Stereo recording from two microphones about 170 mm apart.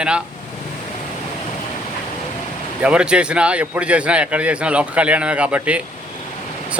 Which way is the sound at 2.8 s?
5° right (ahead or behind).